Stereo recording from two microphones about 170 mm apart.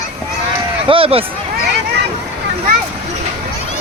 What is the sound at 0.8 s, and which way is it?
Speech, 35° right (ahead or behind).